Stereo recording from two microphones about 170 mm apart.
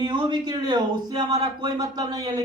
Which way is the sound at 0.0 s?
25° right (ahead or behind).